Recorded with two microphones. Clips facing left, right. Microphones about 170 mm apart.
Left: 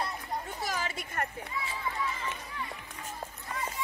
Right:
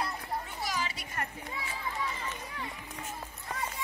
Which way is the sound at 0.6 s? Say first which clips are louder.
Left 1 dB; 50° left (ahead or behind).